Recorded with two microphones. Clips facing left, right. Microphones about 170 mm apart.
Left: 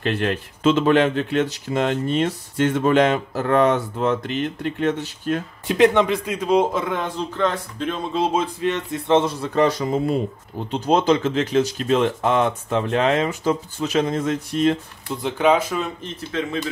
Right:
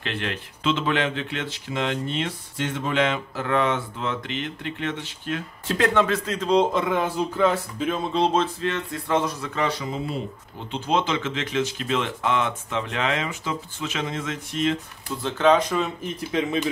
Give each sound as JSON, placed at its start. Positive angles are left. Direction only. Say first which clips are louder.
{"t": 0.0, "sound": "speech", "louder": "left 8 dB", "side_deg": 45}
{"t": 5.7, "sound": "speech", "louder": "left 5 dB", "side_deg": 15}
{"t": 15.2, "sound": "speech", "louder": "left 1 dB", "side_deg": 10}
{"t": 16.0, "sound": "speech", "louder": "right 1 dB", "side_deg": -10}